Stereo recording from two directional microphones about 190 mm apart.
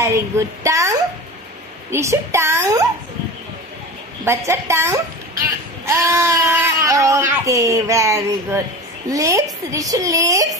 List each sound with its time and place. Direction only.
0.0 s speech: 15° right (ahead or behind)
4.2 s speech: 15° right (ahead or behind)